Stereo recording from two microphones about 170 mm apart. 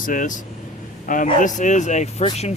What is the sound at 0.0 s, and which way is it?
Speech, 50° left (ahead or behind).